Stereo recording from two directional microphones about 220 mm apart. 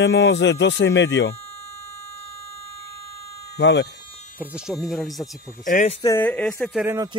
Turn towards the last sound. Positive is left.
turn(degrees=-15)  # may be behind; listen again after turning